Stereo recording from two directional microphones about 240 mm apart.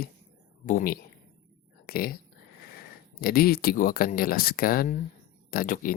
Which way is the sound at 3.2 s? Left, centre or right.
Left.